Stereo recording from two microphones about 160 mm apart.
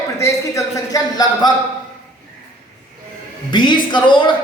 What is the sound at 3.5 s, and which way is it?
Speech, 30° left (ahead or behind).